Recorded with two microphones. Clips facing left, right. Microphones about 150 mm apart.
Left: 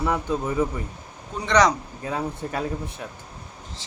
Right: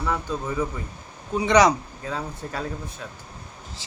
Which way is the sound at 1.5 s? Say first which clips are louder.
Right 2 dB; 10° right (ahead or behind).